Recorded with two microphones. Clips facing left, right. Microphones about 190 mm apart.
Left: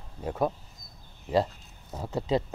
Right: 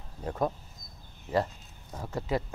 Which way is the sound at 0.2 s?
10° left (ahead or behind).